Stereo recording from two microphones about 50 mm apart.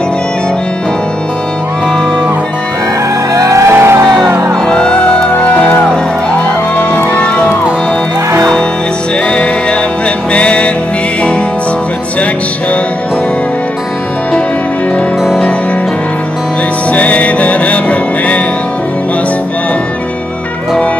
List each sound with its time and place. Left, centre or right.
3.4 s music: right
3.7 s music: right
4.6 s music: centre
9.3 s music: left
16.9 s music: left